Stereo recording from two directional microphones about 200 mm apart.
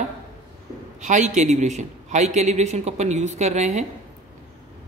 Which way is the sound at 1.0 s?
35° right (ahead or behind).